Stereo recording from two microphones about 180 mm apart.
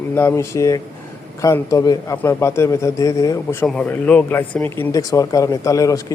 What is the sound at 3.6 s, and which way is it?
A man's voice, 5° left (ahead or behind).